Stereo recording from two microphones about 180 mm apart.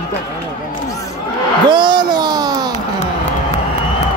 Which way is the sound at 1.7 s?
25° right (ahead or behind).